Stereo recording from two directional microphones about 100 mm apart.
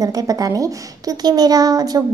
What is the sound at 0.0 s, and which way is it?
A woman's voice, 35° right (ahead or behind).